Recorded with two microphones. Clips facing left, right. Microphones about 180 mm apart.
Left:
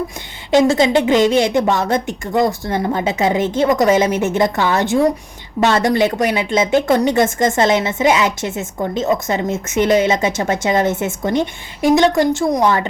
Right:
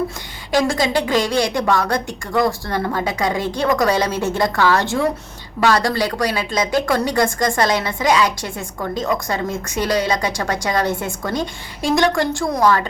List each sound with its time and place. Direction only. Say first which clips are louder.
0.5 s a woman's voice: left 5 dB; 25° left (ahead or behind)